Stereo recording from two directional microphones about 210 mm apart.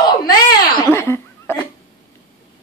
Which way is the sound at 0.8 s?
10° left (ahead or behind).